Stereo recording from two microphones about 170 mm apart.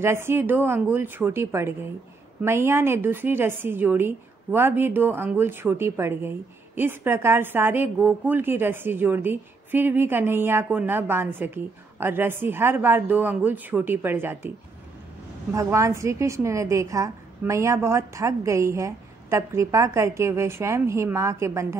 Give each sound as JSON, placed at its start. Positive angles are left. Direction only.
{"t": 0.0, "sound": "a woman's voice", "side_deg": -15}
{"t": 15.5, "sound": "a woman's voice", "side_deg": -20}